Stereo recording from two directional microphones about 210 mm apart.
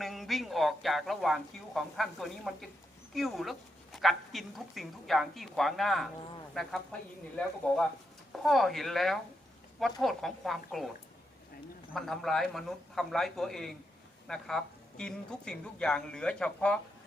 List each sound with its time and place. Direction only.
0.0 s a woman's voice: centre (ahead or behind)
11.9 s a woman's voice: centre (ahead or behind)